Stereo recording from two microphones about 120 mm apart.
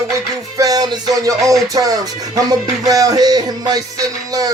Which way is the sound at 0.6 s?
30° right (ahead or behind).